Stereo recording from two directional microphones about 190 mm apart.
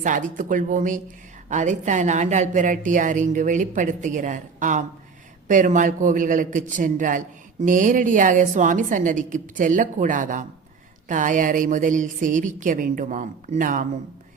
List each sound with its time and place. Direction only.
0.0 s a woman's voice: 40° right (ahead or behind)